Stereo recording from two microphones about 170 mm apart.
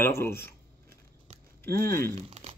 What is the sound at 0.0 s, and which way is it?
Speech, 15° left (ahead or behind).